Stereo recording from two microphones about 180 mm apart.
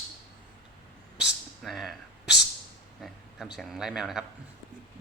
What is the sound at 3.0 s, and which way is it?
Speech, 5° right (ahead or behind).